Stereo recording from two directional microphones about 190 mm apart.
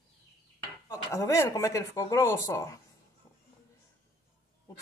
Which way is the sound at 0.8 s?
15° left (ahead or behind).